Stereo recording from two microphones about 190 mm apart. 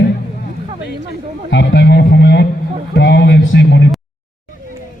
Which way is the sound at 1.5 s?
65° left (ahead or behind).